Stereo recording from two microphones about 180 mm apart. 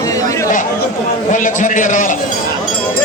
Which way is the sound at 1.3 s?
45° left (ahead or behind).